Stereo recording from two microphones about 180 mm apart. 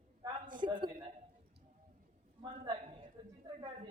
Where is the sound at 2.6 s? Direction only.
30° right (ahead or behind).